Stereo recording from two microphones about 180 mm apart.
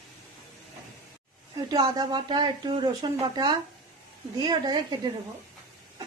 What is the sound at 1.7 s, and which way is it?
Speech, 25° right (ahead or behind).